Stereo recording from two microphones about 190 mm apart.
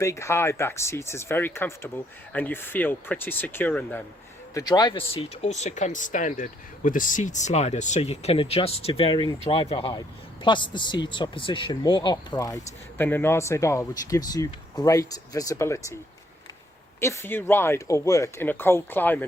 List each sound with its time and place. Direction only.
0.0 s speech: 15° left (ahead or behind)
4.5 s speech: 20° left (ahead or behind)
17.0 s speech: 15° left (ahead or behind)